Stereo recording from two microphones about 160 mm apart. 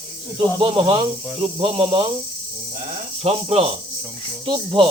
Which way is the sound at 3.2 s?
40° right (ahead or behind).